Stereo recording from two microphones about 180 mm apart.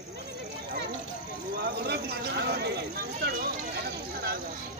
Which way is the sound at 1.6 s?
65° right (ahead or behind).